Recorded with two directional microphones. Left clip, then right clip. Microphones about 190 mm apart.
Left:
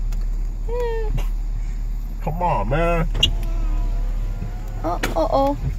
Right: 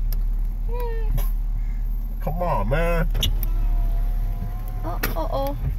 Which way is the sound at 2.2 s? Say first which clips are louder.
Left 3 dB; 50° right (ahead or behind).